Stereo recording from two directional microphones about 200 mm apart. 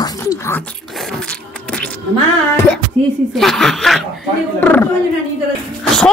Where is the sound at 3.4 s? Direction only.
Centre (ahead or behind).